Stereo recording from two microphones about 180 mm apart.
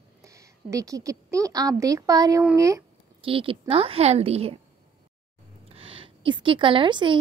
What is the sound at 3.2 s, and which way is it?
Speech, 30° right (ahead or behind).